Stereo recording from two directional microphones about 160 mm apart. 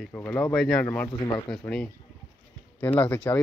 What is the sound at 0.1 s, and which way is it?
Speech, 10° left (ahead or behind).